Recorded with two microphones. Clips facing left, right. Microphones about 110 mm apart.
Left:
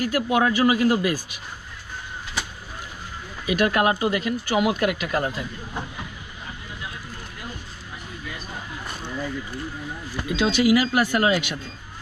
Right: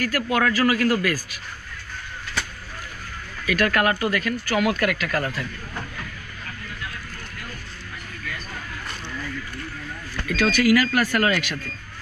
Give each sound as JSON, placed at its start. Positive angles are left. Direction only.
{"t": 0.0, "sound": "speech", "side_deg": 20}
{"t": 3.4, "sound": "speech", "side_deg": 15}
{"t": 9.1, "sound": "speech", "side_deg": 20}